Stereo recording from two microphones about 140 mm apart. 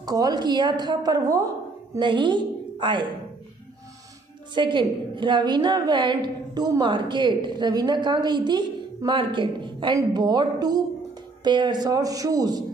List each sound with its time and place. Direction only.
0.0 s a woman's voice: 25° right (ahead or behind)
4.6 s a woman's voice: 35° right (ahead or behind)